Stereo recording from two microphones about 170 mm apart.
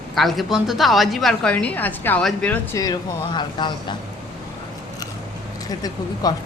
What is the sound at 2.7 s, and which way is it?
Speech, 25° left (ahead or behind).